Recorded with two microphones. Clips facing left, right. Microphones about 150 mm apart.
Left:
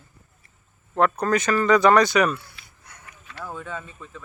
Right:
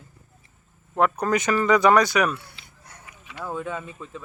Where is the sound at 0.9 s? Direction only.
10° right (ahead or behind).